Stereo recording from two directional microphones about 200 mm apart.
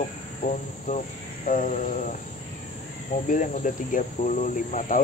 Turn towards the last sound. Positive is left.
turn(degrees=40)  # may be behind; listen again after turning